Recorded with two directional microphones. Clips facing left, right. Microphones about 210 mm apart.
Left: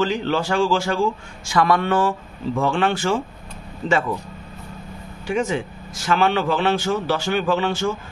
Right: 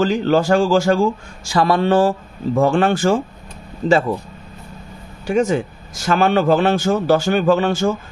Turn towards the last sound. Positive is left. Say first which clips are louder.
# right 5 dB
turn(degrees=-45)  # may be behind; listen again after turning